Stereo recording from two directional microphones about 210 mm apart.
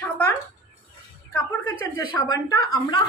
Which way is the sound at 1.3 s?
10° left (ahead or behind).